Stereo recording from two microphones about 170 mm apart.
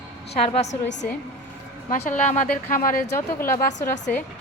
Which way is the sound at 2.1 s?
45° left (ahead or behind).